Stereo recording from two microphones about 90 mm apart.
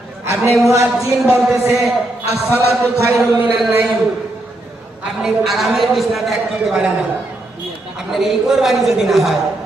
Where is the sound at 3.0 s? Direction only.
30° right (ahead or behind).